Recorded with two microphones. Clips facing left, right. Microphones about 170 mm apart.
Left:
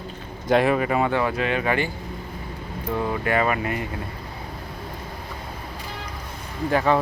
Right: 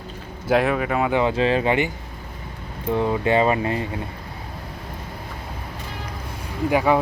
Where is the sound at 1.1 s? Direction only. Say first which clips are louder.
Right 4 dB; 25° right (ahead or behind).